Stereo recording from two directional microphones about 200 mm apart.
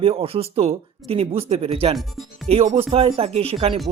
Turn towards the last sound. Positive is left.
turn(degrees=-30)  # may be behind; listen again after turning